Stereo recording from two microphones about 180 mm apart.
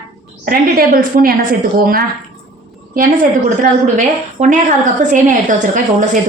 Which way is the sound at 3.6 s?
45° right (ahead or behind).